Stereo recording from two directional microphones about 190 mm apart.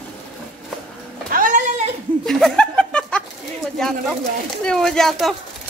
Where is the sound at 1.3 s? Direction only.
45° right (ahead or behind).